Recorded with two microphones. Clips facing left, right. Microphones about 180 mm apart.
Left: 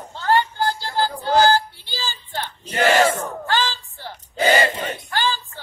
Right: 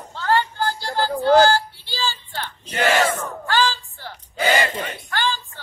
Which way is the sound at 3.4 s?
20° left (ahead or behind).